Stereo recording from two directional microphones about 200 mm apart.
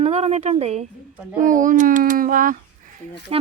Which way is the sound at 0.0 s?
30° right (ahead or behind).